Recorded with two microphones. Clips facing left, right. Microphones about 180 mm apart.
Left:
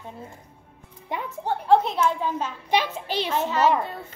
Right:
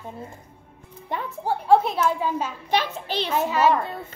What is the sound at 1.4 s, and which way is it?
A woman's voice, 10° right (ahead or behind).